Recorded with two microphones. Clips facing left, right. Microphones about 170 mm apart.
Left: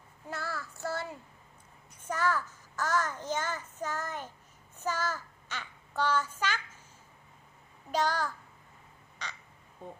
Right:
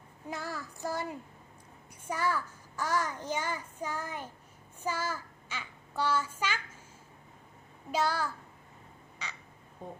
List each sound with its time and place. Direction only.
0.3 s child singing: 15° right (ahead or behind)
2.0 s a child's voice: 10° right (ahead or behind)
7.9 s a child's voice: 10° right (ahead or behind)